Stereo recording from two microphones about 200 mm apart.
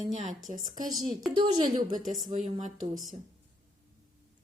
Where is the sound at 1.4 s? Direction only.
20° right (ahead or behind).